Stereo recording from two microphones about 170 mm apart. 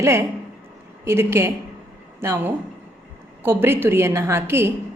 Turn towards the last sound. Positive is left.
turn(degrees=-15)  # may be behind; listen again after turning